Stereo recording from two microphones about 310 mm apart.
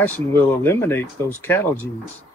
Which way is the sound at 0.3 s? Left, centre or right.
Centre.